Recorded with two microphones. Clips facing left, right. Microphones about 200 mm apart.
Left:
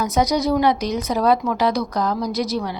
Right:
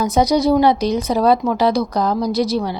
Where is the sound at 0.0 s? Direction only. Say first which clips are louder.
Right 4 dB; 30° right (ahead or behind).